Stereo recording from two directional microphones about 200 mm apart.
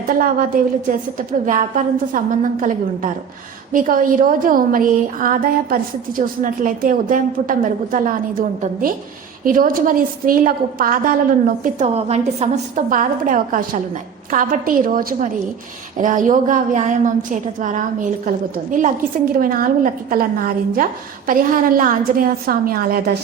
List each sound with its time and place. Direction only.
0.2 s a woman's voice: 45° right (ahead or behind)
11.6 s a woman's voice: 35° right (ahead or behind)
21.2 s a woman's voice: 45° right (ahead or behind)